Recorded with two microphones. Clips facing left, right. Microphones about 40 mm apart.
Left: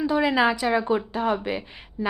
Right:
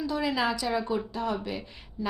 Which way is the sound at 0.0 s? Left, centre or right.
Left.